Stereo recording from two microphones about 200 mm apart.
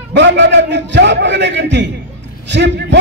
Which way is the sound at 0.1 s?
60° right (ahead or behind).